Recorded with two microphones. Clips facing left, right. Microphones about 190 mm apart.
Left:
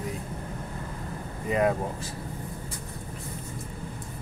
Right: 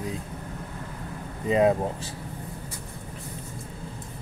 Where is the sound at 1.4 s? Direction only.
25° right (ahead or behind).